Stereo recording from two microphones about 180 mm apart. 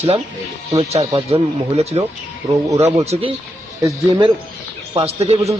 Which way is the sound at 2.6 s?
15° right (ahead or behind).